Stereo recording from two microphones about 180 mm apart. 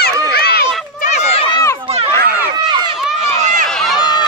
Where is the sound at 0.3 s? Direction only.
60° left (ahead or behind).